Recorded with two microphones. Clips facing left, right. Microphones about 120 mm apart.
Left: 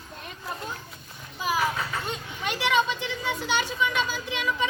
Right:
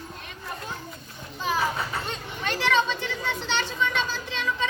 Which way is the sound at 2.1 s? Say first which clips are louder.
Right 1 dB; 15° left (ahead or behind).